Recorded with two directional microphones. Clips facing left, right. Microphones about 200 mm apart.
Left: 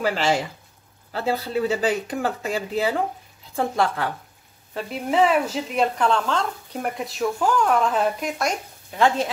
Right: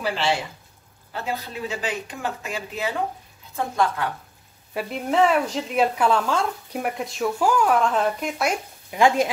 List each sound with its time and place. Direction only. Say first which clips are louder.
0.0 s speech: left 3 dB; 40° left (ahead or behind)
4.7 s speech: even; centre (ahead or behind)